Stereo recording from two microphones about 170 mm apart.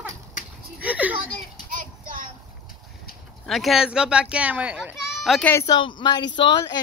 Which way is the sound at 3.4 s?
Centre (ahead or behind).